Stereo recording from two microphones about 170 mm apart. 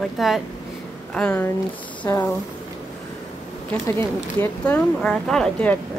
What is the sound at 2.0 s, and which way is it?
Speech, 15° left (ahead or behind).